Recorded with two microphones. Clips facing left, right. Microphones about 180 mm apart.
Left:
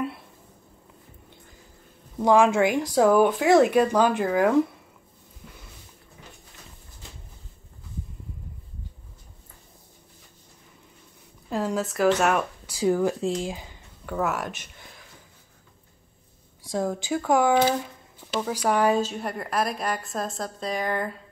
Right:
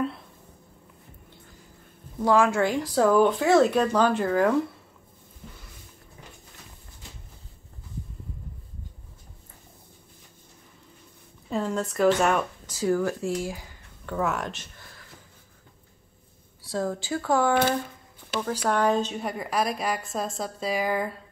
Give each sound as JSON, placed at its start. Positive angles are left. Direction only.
{"t": 2.2, "sound": "speech", "side_deg": 20}
{"t": 11.5, "sound": "a woman's voice", "side_deg": 5}
{"t": 12.7, "sound": "speech", "side_deg": 15}
{"t": 14.0, "sound": "speech", "side_deg": 5}
{"t": 16.6, "sound": "a woman's voice", "side_deg": 15}